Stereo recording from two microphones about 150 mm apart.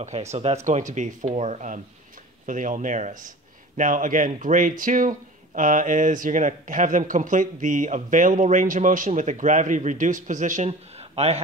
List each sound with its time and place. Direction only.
0.0 s speech: 50° right (ahead or behind)